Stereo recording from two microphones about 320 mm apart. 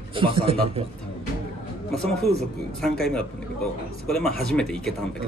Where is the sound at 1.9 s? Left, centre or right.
Centre.